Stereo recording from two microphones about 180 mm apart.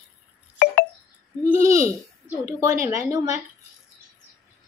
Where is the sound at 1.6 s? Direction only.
15° right (ahead or behind).